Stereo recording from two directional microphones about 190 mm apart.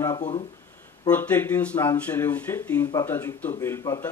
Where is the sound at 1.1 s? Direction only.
10° left (ahead or behind).